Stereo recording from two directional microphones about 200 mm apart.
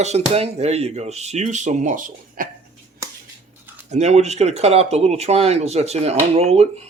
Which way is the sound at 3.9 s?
35° right (ahead or behind).